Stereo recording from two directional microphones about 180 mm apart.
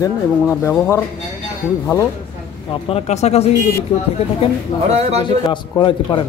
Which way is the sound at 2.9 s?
35° left (ahead or behind).